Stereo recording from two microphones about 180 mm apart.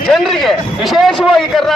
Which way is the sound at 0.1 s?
Centre (ahead or behind).